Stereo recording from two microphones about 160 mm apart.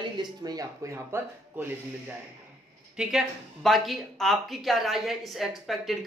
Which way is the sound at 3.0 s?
5° right (ahead or behind).